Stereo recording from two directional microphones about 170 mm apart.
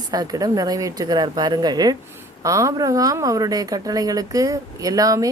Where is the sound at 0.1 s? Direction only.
20° right (ahead or behind).